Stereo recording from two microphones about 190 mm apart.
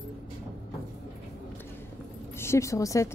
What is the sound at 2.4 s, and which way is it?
Speech, 15° left (ahead or behind).